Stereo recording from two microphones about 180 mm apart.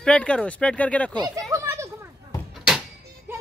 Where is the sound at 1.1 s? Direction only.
20° right (ahead or behind).